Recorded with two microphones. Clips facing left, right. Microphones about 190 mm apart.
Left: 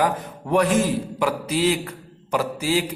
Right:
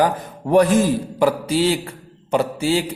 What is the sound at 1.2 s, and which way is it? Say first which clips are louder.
A man's voice: right 5 dB; 35° right (ahead or behind).